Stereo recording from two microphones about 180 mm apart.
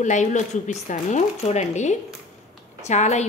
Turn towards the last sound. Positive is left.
turn(degrees=40)  # may be behind; listen again after turning